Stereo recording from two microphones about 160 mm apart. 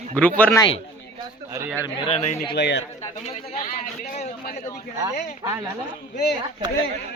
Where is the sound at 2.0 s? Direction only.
45° left (ahead or behind).